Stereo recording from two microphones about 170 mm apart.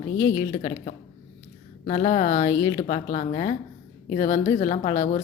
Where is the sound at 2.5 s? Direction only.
20° left (ahead or behind).